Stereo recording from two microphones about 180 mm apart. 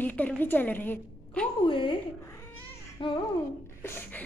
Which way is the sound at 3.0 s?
30° left (ahead or behind).